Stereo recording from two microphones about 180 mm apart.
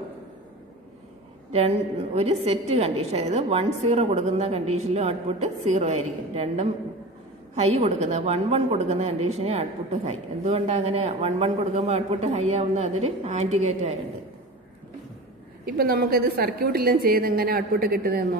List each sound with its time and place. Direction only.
2.4 s a woman's voice: 35° right (ahead or behind)
15.6 s a woman's voice: 55° right (ahead or behind)